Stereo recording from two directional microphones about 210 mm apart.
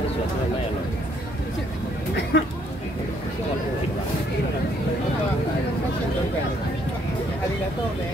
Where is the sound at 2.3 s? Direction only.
55° left (ahead or behind).